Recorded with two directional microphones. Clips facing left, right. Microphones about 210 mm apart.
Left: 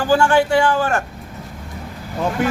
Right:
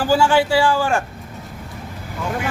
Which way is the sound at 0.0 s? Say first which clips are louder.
Left 1 dB; 5° right (ahead or behind).